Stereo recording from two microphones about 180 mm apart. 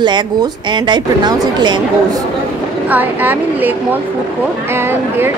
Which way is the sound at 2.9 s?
10° right (ahead or behind).